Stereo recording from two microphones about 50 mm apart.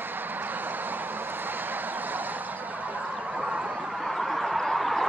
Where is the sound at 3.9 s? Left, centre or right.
Centre.